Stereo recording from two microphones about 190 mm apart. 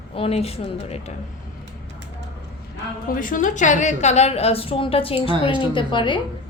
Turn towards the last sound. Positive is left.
turn(degrees=25)  # may be behind; listen again after turning